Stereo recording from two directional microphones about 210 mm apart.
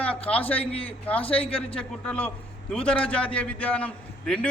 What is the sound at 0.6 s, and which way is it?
Speech, 25° left (ahead or behind).